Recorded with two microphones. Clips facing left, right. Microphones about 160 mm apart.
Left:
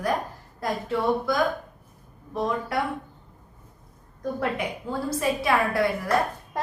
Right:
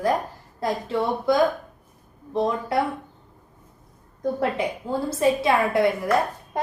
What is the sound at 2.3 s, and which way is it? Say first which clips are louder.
Speech: right 4 dB; 25° right (ahead or behind).